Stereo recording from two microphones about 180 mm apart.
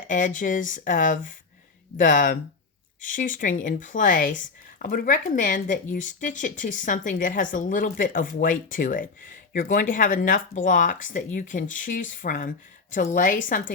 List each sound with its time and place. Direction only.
0.1 s speech: 45° left (ahead or behind)